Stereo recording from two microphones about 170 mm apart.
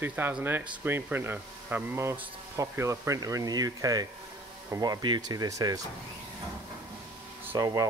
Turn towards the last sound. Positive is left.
turn(degrees=-20)  # may be behind; listen again after turning